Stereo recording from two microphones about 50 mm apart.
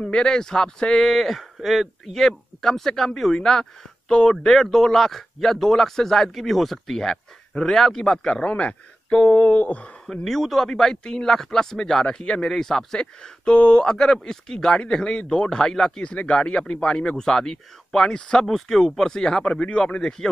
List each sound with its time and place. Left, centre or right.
0.0 s speech: centre
9.4 s a sound: left
10.2 s speech: centre